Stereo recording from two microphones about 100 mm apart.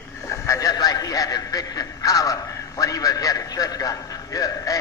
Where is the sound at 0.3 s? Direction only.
35° left (ahead or behind).